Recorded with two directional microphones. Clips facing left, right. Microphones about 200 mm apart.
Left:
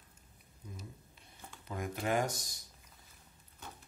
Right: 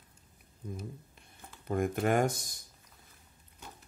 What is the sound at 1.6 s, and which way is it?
Speech, 50° right (ahead or behind).